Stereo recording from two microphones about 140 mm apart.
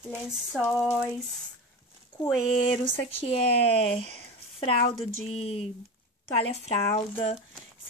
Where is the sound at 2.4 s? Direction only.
40° left (ahead or behind).